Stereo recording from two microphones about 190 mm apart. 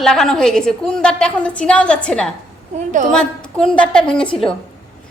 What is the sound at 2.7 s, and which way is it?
Speech, 40° right (ahead or behind).